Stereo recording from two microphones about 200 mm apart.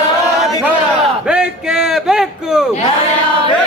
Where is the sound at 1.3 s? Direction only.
5° right (ahead or behind).